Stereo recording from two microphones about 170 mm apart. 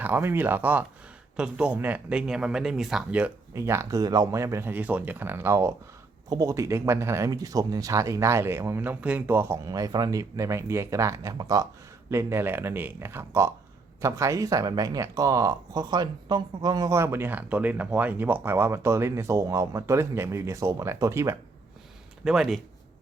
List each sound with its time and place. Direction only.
0.0 s speech: 10° right (ahead or behind)
22.2 s speech: 5° right (ahead or behind)